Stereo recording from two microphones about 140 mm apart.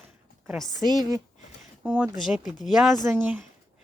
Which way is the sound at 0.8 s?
30° right (ahead or behind).